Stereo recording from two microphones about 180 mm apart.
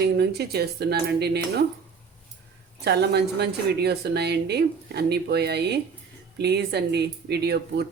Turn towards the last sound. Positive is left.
turn(degrees=-65)  # may be behind; listen again after turning